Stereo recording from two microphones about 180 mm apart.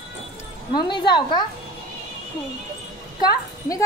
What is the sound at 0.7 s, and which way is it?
Speech, 25° left (ahead or behind).